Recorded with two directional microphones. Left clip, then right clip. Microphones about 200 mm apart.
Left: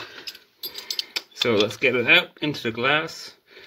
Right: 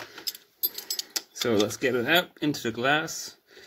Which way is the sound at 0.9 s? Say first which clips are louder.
Left 7 dB; 60° right (ahead or behind).